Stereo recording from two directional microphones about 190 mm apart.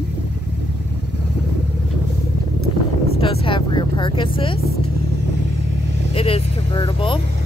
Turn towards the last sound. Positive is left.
turn(degrees=25)  # may be behind; listen again after turning